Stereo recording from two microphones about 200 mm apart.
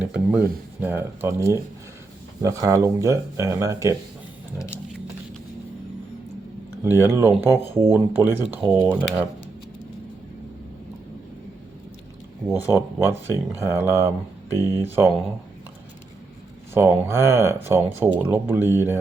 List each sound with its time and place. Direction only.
0.0 s speech: 5° right (ahead or behind)
6.8 s speech: 10° right (ahead or behind)
8.9 s speech: 5° left (ahead or behind)
12.7 s speech: 15° right (ahead or behind)
16.7 s speech: 15° right (ahead or behind)